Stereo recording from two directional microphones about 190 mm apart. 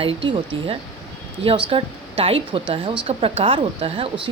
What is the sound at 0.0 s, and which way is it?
Speech, 30° right (ahead or behind).